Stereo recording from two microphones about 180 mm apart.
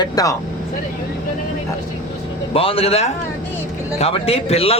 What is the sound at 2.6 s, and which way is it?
Speech, 30° left (ahead or behind).